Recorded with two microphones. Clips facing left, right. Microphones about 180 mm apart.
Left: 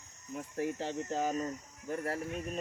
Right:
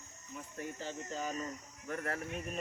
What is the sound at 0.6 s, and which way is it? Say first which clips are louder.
Speech: left 7 dB; 70° left (ahead or behind).